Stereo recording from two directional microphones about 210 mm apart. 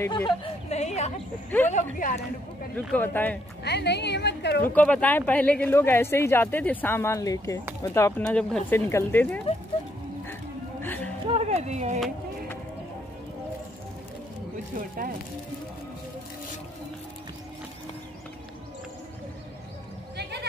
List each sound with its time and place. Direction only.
0.0 s speech: 10° left (ahead or behind)
0.7 s a sound: 30° left (ahead or behind)
1.7 s speech: 40° left (ahead or behind)
2.7 s speech: 10° left (ahead or behind)
3.6 s a woman's voice: 55° left (ahead or behind)
4.6 s speech: 5° left (ahead or behind)
10.8 s music: 10° left (ahead or behind)
11.2 s a sound: 30° right (ahead or behind)
20.2 s horse: 50° right (ahead or behind)